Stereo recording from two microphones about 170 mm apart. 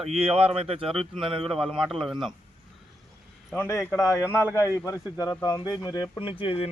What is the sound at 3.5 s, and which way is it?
Speech, 15° left (ahead or behind).